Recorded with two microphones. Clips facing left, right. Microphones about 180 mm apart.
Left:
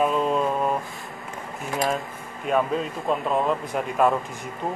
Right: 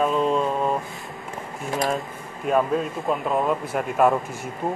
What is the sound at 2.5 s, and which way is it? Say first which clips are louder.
Speech: right 2 dB; 5° right (ahead or behind).